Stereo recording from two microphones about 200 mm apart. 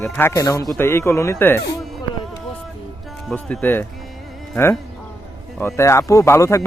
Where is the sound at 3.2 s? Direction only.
5° left (ahead or behind).